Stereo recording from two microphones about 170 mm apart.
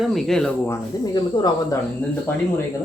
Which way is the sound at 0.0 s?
Centre (ahead or behind).